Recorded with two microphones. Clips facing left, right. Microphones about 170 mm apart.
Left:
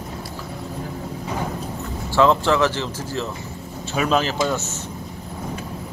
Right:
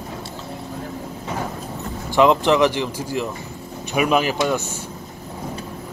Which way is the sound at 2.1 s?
15° right (ahead or behind).